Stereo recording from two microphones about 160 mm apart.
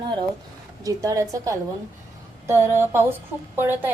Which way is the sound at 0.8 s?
20° right (ahead or behind).